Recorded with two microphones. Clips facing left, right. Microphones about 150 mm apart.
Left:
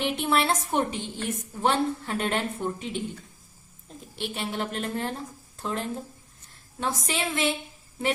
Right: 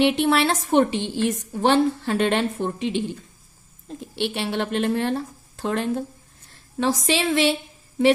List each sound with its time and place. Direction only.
0.0 s a woman's voice: 80° right
6.7 s a woman's voice: 90° right